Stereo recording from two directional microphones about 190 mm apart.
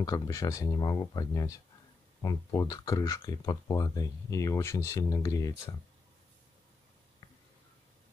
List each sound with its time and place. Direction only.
0.0 s speech: 20° left (ahead or behind)